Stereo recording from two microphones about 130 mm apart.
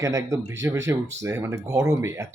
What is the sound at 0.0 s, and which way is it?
A man's voice, 25° right (ahead or behind).